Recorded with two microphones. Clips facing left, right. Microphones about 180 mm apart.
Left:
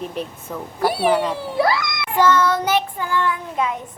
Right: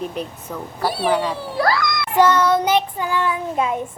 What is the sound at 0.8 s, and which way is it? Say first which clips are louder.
A child's voice: left 2 dB; 15° left (ahead or behind).